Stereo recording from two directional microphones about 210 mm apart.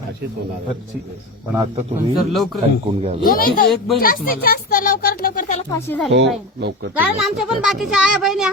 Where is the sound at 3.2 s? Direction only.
45° left (ahead or behind).